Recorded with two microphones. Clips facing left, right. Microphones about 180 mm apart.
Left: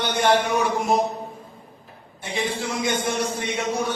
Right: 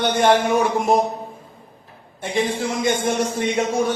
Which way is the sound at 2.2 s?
50° right (ahead or behind).